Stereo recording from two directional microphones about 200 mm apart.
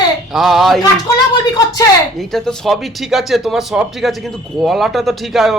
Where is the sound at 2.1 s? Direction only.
Centre (ahead or behind).